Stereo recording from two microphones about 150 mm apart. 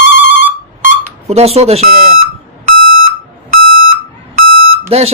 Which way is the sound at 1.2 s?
45° right (ahead or behind).